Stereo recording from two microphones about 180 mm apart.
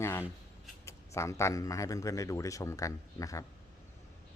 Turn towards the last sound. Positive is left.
turn(degrees=20)  # may be behind; listen again after turning